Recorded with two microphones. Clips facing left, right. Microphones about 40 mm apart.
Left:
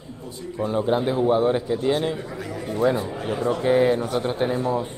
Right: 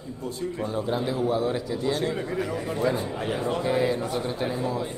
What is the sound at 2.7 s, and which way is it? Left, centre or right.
Speech, left.